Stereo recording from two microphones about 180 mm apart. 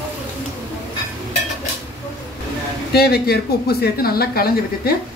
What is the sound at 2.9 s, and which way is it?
Speech, 60° left (ahead or behind).